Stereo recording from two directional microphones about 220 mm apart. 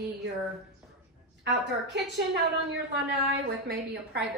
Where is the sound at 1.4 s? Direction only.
50° right (ahead or behind).